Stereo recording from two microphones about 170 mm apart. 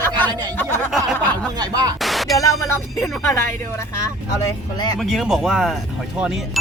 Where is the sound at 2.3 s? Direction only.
20° left (ahead or behind).